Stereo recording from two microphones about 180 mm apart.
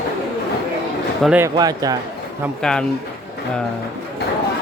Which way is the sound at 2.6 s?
5° left (ahead or behind).